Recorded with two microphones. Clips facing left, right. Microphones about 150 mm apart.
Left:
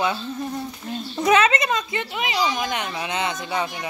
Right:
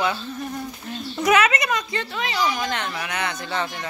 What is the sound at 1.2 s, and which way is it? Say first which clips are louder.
A woman's voice: left 1 dB; 25° left (ahead or behind).